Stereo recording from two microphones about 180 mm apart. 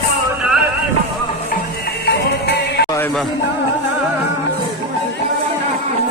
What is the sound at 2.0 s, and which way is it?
Music, 65° left (ahead or behind).